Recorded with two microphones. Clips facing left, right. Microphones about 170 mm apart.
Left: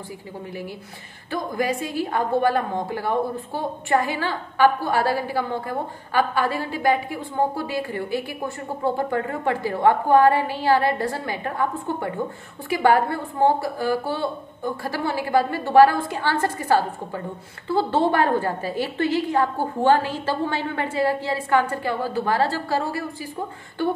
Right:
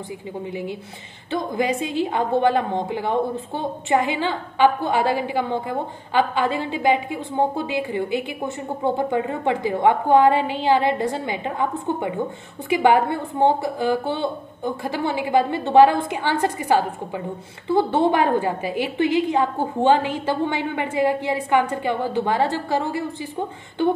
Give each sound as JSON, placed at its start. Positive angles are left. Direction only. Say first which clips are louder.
{"t": 0.5, "sound": "a woman's voice", "louder": "right 3 dB", "side_deg": -20}